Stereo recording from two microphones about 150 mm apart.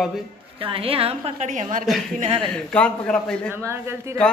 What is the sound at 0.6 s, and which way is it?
A woman's voice, 40° right (ahead or behind).